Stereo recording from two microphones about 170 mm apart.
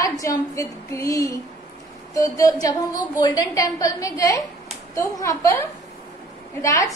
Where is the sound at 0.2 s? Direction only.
20° left (ahead or behind).